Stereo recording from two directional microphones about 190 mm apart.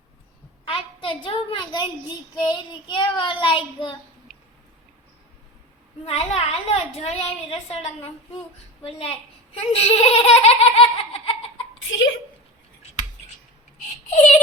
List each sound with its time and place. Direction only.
0.6 s a woman's voice: 25° left (ahead or behind)
2.3 s child singing: 25° left (ahead or behind)
6.1 s a child's voice: 30° left (ahead or behind)
9.7 s laughter: 30° left (ahead or behind)
14.1 s a sound: 40° left (ahead or behind)